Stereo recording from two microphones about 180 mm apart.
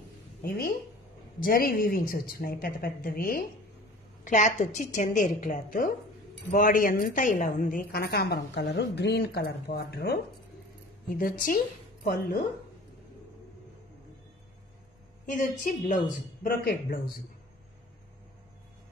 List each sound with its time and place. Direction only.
0.4 s a woman's voice: 55° left (ahead or behind)
4.3 s a woman's voice: 40° left (ahead or behind); by 10.1 s 65° left (ahead or behind)
11.1 s a woman's voice: 50° left (ahead or behind)
15.2 s speech: 45° left (ahead or behind)
16.4 s a woman's voice: 55° left (ahead or behind)